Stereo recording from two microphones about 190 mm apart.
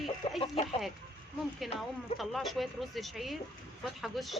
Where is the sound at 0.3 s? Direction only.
30° left (ahead or behind).